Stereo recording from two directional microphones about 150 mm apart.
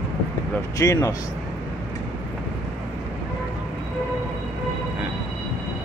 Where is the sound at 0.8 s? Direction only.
20° left (ahead or behind).